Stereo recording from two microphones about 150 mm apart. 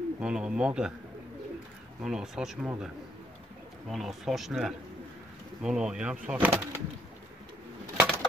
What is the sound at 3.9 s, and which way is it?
Speech, centre (ahead or behind).